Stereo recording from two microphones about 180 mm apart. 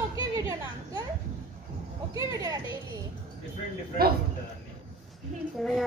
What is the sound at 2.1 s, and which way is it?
Music, 20° right (ahead or behind).